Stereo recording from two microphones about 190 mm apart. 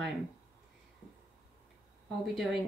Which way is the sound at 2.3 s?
Centre (ahead or behind).